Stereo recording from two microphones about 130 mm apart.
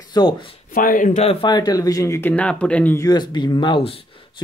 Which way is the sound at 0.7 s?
90° left.